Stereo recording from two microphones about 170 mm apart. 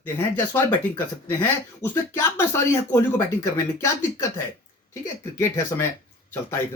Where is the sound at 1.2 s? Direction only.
10° left (ahead or behind).